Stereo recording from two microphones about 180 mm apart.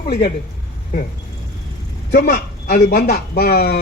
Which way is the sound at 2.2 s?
50° left (ahead or behind).